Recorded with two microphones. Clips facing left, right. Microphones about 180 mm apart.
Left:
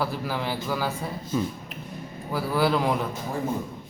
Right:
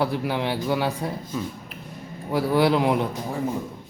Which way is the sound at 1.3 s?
Centre (ahead or behind).